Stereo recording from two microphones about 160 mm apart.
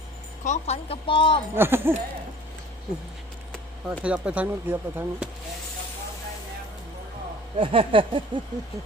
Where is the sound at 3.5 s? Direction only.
5° right (ahead or behind).